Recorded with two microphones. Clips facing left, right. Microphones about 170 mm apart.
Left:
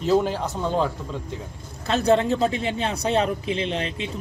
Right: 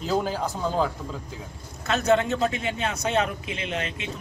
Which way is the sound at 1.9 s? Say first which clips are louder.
Left 2 dB; 35° left (ahead or behind).